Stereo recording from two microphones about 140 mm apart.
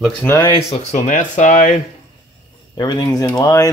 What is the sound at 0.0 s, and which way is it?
Speech, 15° left (ahead or behind).